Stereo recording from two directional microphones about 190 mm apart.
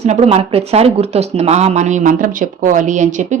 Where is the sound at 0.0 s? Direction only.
35° right (ahead or behind).